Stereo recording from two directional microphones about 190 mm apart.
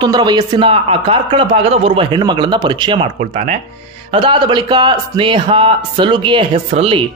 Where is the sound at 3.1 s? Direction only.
35° right (ahead or behind).